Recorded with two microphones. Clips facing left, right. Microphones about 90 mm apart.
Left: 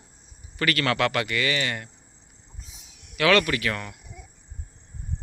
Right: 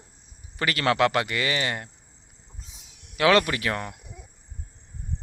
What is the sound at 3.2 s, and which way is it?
Speech, 25° right (ahead or behind).